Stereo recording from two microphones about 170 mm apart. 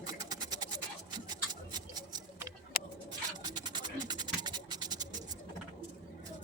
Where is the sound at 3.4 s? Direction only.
25° right (ahead or behind).